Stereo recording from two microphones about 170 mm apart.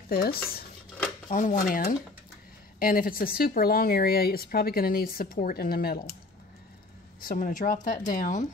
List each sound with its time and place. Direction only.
0.1 s speech: 60° left (ahead or behind)
7.2 s speech: 55° left (ahead or behind)